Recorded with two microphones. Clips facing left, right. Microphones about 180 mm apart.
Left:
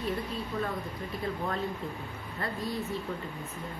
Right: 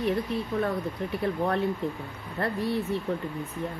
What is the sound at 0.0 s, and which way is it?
Speech, 65° right (ahead or behind).